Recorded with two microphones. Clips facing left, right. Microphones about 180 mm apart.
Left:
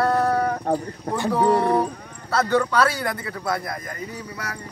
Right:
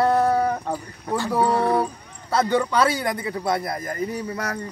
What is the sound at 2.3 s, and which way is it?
Speech, 15° right (ahead or behind).